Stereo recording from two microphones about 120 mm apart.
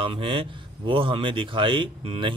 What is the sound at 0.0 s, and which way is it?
Speech, 45° right (ahead or behind).